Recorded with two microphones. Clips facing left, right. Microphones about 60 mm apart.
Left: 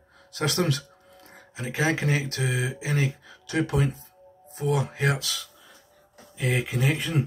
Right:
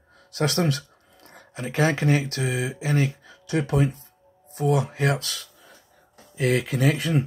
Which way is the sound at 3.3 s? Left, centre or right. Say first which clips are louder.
Right 1 dB; left.